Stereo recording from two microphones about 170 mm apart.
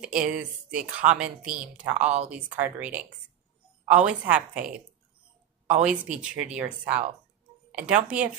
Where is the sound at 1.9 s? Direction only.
45° right (ahead or behind).